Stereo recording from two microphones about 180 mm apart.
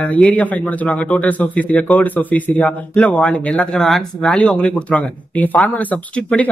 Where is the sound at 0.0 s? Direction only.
5° left (ahead or behind).